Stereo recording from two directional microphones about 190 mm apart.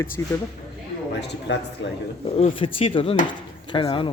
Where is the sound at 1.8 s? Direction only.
75° left (ahead or behind).